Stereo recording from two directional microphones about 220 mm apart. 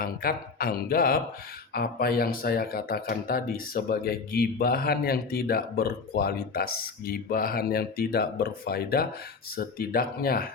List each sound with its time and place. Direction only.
0.0 s speech: 45° left (ahead or behind)